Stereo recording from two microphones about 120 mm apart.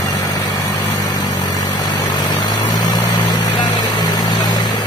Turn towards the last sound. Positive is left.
turn(degrees=35)  # may be behind; listen again after turning